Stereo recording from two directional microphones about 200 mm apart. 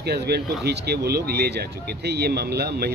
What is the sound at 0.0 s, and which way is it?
Speech, 55° right (ahead or behind).